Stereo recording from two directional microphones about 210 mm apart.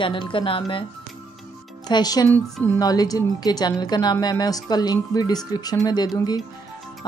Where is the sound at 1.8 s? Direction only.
20° left (ahead or behind).